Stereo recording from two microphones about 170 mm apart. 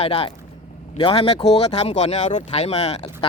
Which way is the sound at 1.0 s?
35° left (ahead or behind).